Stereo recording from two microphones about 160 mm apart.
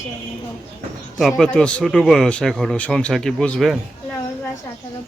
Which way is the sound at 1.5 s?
5° left (ahead or behind).